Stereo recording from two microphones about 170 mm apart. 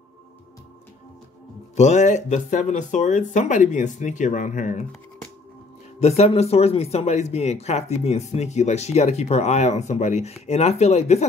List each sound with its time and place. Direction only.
1.8 s speech: 45° left (ahead or behind)
5.9 s speech: 40° left (ahead or behind)